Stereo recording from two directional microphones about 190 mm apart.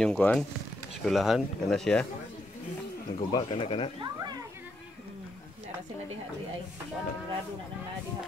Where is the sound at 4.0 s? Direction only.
20° right (ahead or behind).